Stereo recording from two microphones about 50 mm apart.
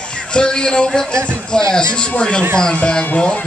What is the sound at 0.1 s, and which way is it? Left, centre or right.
A man's voice, centre.